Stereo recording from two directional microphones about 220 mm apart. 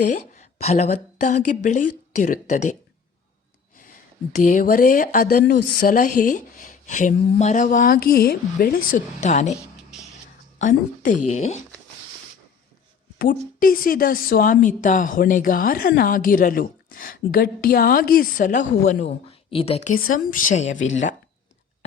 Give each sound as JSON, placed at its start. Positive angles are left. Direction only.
{"t": 0.6, "sound": "speech", "side_deg": 30}
{"t": 3.8, "sound": "speech", "side_deg": 35}
{"t": 10.6, "sound": "a woman's voice", "side_deg": 35}
{"t": 13.6, "sound": "speech", "side_deg": 40}
{"t": 20.7, "sound": "speech", "side_deg": 60}